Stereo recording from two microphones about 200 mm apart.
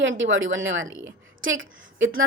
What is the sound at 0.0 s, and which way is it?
A woman's voice, 70° right (ahead or behind).